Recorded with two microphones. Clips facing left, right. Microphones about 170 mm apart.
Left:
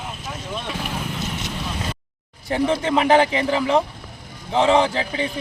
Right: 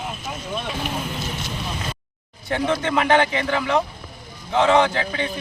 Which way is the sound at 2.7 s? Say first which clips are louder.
Left 2 dB; 30° left (ahead or behind).